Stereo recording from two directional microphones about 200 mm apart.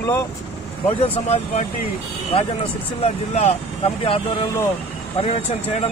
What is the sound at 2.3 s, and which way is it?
Speech, 30° left (ahead or behind).